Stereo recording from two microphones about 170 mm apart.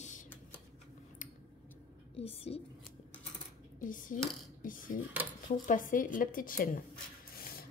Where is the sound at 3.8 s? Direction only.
50° left (ahead or behind).